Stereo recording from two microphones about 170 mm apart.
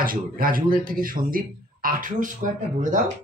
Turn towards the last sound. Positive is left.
turn(degrees=-45)  # may be behind; listen again after turning